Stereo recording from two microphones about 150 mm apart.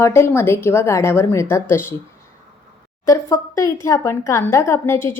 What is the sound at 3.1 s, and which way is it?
A woman's voice, 20° left (ahead or behind).